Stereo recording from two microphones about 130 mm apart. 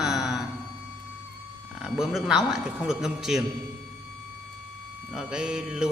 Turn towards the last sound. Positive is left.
turn(degrees=-5)  # may be behind; listen again after turning